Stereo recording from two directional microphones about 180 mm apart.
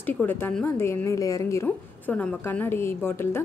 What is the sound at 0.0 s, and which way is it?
Speech, 10° left (ahead or behind).